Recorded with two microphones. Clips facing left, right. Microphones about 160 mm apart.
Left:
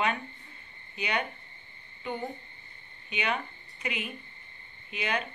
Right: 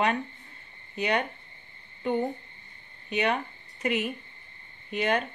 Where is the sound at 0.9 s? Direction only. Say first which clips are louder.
Right 5 dB; 45° right (ahead or behind).